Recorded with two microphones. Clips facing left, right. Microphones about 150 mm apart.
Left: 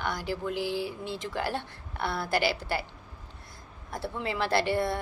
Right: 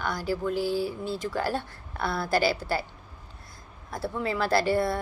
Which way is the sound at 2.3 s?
40° right (ahead or behind).